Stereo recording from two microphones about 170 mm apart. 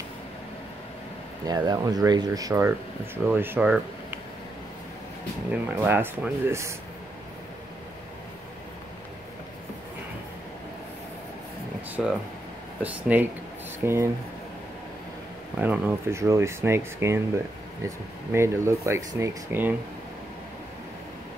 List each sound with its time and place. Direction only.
1.5 s speech: 25° right (ahead or behind)
5.5 s speech: 10° right (ahead or behind)
11.9 s speech: 5° right (ahead or behind)
15.6 s speech: 10° right (ahead or behind)